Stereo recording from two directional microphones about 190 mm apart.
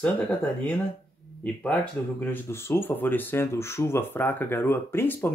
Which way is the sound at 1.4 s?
10° left (ahead or behind).